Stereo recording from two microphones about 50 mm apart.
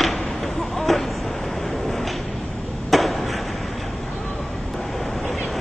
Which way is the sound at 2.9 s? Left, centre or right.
Centre.